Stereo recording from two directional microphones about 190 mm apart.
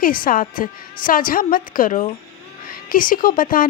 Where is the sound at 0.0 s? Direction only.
50° left (ahead or behind).